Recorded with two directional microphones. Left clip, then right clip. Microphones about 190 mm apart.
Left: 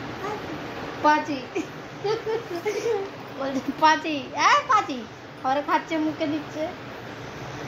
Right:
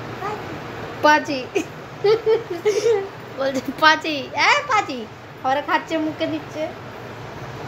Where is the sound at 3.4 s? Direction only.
30° right (ahead or behind).